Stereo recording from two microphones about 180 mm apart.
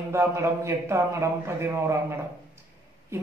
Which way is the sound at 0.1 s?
15° right (ahead or behind).